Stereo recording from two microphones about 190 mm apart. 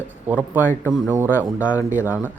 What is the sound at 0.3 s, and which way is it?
Speech, 10° right (ahead or behind).